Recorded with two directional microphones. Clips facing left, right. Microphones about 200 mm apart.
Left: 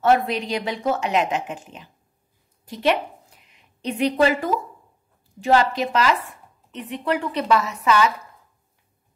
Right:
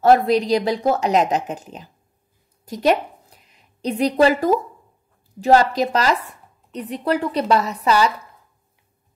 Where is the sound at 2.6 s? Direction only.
40° right (ahead or behind).